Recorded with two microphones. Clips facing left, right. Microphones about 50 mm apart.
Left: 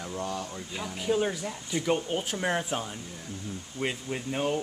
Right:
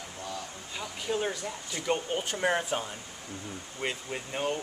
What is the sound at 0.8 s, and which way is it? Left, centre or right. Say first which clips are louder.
Speech: left 4 dB; centre.